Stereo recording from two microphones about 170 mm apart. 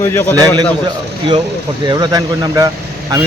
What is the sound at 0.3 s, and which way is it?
Speech, 20° right (ahead or behind).